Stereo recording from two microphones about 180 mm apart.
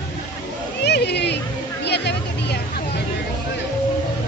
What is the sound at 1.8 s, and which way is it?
Hubbub, 70° left (ahead or behind).